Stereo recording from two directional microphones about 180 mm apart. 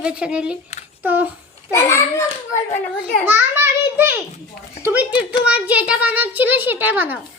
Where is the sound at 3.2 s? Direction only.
10° right (ahead or behind).